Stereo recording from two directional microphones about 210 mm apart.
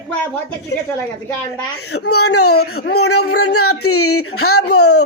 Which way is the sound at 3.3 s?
90° left.